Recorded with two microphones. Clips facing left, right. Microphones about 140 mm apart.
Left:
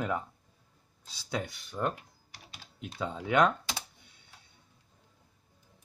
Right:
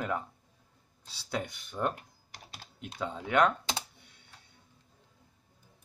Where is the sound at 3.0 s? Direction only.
10° left (ahead or behind).